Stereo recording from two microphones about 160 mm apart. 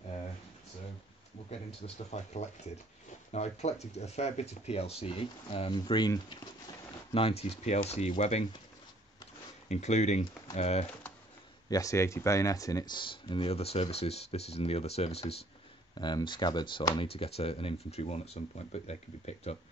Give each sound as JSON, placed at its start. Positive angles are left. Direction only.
{"t": 2.0, "sound": "speech", "side_deg": 45}
{"t": 9.7, "sound": "speech", "side_deg": 45}
{"t": 11.7, "sound": "speech", "side_deg": 20}
{"t": 15.9, "sound": "speech", "side_deg": 30}